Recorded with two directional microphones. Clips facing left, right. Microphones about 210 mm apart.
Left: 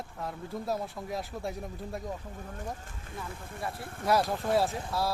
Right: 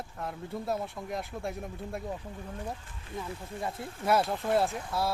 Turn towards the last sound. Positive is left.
turn(degrees=0)  # may be behind; listen again after turning